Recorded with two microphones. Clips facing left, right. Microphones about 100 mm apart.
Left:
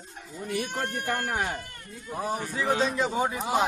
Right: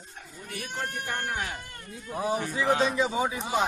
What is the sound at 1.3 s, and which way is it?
Speech, 40° left (ahead or behind).